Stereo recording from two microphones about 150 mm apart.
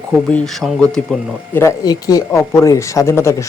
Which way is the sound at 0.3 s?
5° left (ahead or behind).